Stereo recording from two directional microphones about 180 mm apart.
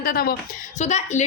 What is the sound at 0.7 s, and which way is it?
Speech, 40° left (ahead or behind).